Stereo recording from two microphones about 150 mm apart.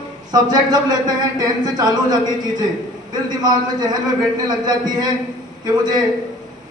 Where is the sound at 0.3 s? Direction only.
30° right (ahead or behind).